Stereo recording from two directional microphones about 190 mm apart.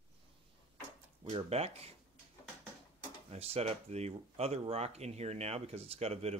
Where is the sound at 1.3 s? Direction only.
35° right (ahead or behind).